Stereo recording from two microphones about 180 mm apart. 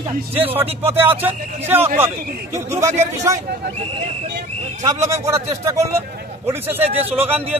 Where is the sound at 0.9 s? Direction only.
10° right (ahead or behind).